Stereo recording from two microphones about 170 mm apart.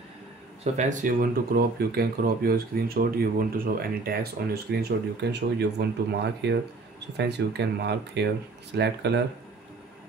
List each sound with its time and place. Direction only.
0.7 s speech: 45° right (ahead or behind); by 9.2 s 80° right